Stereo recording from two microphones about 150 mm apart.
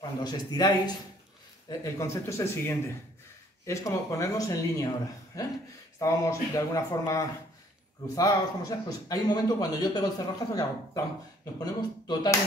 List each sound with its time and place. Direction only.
0.2 s a man's voice: 25° left (ahead or behind)
11.6 s a man's voice: 25° left (ahead or behind)